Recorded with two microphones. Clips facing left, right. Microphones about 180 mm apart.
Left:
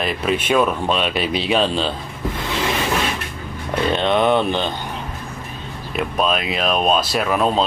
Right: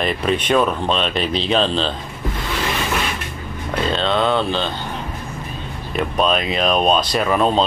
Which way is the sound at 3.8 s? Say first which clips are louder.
Left 2 dB; 15° left (ahead or behind).